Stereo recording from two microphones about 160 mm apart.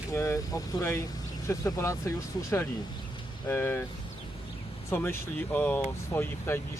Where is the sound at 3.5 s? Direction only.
15° left (ahead or behind).